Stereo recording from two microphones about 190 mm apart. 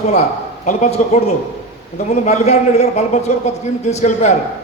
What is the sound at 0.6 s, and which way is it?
A man's voice, 40° left (ahead or behind).